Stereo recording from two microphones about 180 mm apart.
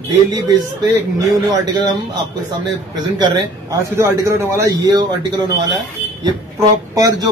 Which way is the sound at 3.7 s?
15° right (ahead or behind).